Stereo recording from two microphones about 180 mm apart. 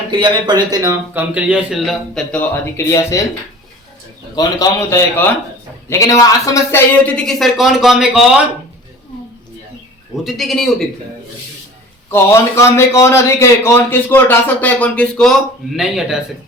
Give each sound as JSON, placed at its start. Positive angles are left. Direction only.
{"t": 0.1, "sound": "a man's voice", "side_deg": -25}
{"t": 4.4, "sound": "a man's voice", "side_deg": 20}
{"t": 10.2, "sound": "a man's voice", "side_deg": 0}
{"t": 12.1, "sound": "a man's voice", "side_deg": 15}